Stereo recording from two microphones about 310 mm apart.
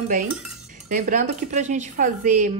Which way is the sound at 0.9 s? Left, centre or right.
Right.